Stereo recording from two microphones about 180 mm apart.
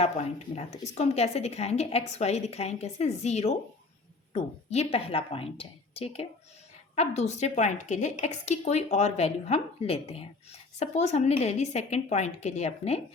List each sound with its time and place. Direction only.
0.0 s speech: 40° left (ahead or behind)